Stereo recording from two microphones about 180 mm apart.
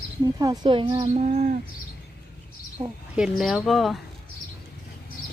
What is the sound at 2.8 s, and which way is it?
Speech, 25° right (ahead or behind).